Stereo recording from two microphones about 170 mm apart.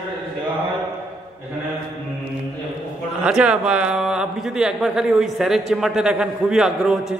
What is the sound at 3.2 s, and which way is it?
Speech, 5° right (ahead or behind).